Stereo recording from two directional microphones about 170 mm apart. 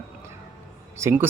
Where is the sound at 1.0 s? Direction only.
15° right (ahead or behind).